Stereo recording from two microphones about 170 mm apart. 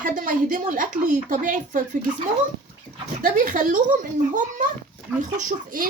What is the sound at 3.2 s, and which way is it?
Speech, 50° right (ahead or behind).